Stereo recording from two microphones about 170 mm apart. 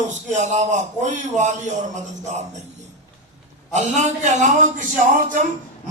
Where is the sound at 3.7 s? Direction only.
45° right (ahead or behind).